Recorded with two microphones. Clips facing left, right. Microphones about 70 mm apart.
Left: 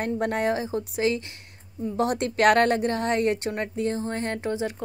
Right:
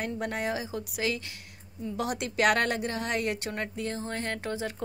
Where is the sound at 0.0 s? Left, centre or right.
Left.